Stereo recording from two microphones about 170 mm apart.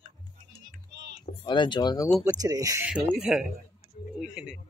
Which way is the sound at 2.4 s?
20° right (ahead or behind).